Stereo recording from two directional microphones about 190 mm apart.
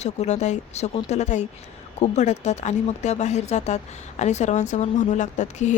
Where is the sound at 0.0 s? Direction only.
35° left (ahead or behind).